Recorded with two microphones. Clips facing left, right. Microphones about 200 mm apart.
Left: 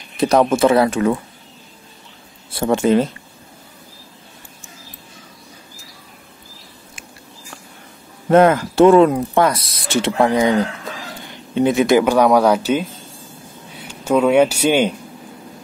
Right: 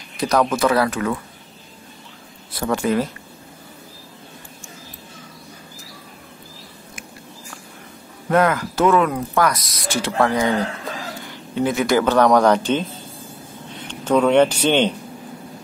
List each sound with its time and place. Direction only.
0.2 s speech: 25° left (ahead or behind)
2.5 s speech: 25° left (ahead or behind)
8.3 s speech: 25° left (ahead or behind)
11.5 s speech: 20° left (ahead or behind)